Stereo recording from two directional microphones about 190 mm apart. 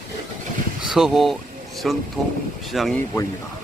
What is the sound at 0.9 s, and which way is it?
Speech, centre (ahead or behind).